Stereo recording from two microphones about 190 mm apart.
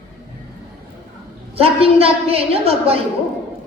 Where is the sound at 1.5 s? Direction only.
30° right (ahead or behind).